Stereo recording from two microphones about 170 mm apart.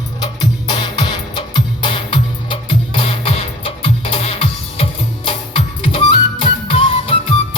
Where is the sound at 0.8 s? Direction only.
25° left (ahead or behind).